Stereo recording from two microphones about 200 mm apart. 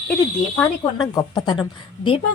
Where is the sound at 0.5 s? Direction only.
15° left (ahead or behind).